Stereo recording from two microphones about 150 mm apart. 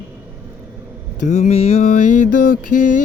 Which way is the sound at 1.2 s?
55° left (ahead or behind).